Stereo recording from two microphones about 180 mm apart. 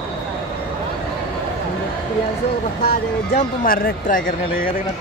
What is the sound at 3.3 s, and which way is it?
Speech, 50° left (ahead or behind).